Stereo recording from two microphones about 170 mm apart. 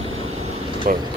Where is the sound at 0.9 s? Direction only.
55° right (ahead or behind).